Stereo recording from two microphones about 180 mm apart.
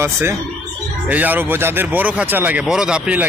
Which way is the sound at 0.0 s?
15° right (ahead or behind).